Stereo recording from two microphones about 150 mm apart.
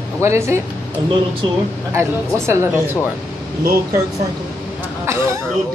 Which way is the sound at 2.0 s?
20° right (ahead or behind).